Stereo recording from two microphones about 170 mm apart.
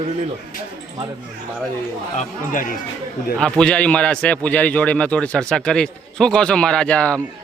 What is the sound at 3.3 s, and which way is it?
A man's voice, 5° left (ahead or behind).